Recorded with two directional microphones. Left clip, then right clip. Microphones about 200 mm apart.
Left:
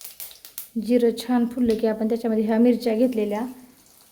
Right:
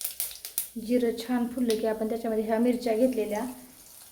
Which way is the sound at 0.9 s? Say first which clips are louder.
Left 6 dB; 50° left (ahead or behind).